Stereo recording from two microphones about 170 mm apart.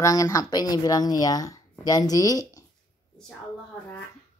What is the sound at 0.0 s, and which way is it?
Speech, 20° left (ahead or behind).